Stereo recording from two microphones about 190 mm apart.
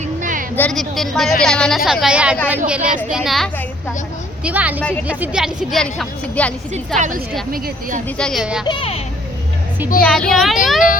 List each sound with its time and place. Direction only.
0.2 s a sound: 45° right (ahead or behind)
0.5 s a woman's voice: 5° left (ahead or behind)
6.9 s a woman's voice: 40° right (ahead or behind)
8.2 s a woman's voice: centre (ahead or behind)
8.6 s speech: 25° left (ahead or behind)
10.0 s a woman's voice: 5° left (ahead or behind)